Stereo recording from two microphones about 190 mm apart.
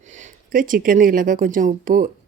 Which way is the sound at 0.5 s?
45° right (ahead or behind).